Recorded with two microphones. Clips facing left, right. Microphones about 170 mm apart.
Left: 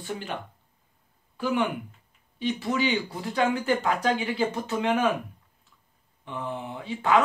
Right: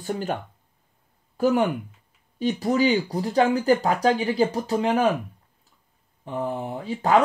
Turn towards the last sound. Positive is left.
turn(degrees=-40)  # may be behind; listen again after turning